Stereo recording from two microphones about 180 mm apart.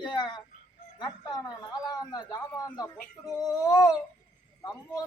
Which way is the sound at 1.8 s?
20° left (ahead or behind).